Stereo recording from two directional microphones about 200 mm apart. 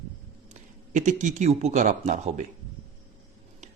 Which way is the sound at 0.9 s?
40° right (ahead or behind).